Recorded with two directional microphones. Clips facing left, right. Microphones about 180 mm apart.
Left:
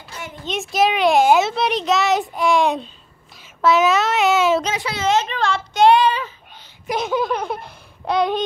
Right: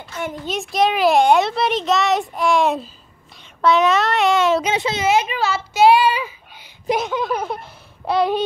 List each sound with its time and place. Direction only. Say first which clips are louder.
0.5 s a child's voice: left 1 dB; centre (ahead or behind)
4.7 s a child's voice: right 4 dB; 25° right (ahead or behind)
5.0 s child singing: left 1 dB; 10° right (ahead or behind)
7.2 s laughter: even; 5° right (ahead or behind)